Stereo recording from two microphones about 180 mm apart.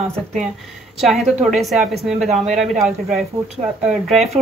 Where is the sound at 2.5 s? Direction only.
Centre (ahead or behind).